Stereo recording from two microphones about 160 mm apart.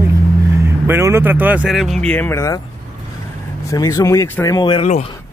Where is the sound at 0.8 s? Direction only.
15° right (ahead or behind); by 2.6 s 20° left (ahead or behind).